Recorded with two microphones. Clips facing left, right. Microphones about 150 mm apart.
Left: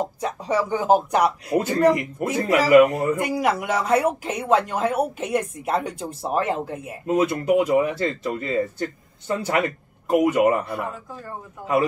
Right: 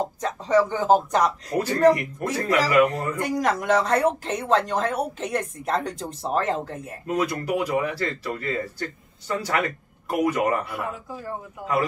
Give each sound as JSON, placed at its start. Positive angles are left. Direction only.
{"t": 0.2, "sound": "speech", "side_deg": 10}
{"t": 7.1, "sound": "speech", "side_deg": 25}
{"t": 11.1, "sound": "a man's voice", "side_deg": -5}